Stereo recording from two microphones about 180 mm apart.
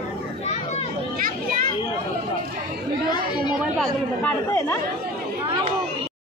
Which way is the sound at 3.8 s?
10° left (ahead or behind).